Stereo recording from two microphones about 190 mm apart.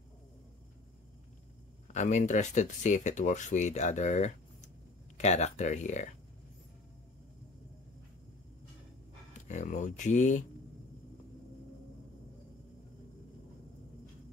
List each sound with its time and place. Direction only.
1.9 s speech: 40° left (ahead or behind)
9.5 s speech: 40° left (ahead or behind)